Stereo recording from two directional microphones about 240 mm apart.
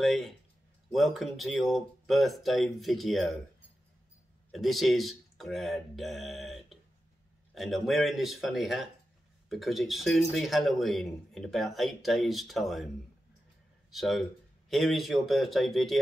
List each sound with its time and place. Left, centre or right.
0.0 s speech: centre
4.5 s speech: centre